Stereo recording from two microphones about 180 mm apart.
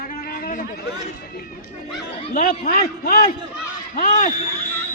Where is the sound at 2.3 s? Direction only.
55° left (ahead or behind).